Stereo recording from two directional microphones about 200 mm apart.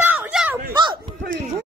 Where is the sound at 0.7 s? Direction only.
20° right (ahead or behind).